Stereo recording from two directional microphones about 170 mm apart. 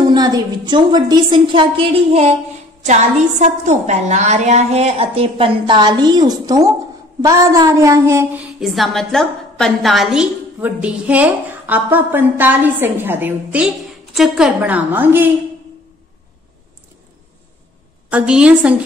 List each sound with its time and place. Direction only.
0.1 s a woman's voice: 25° right (ahead or behind)
18.1 s a woman's voice: 5° right (ahead or behind)